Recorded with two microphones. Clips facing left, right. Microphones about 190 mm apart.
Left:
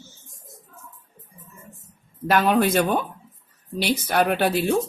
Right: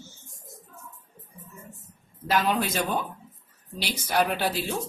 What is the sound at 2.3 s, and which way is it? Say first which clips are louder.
Speech: left 6 dB; 60° left (ahead or behind).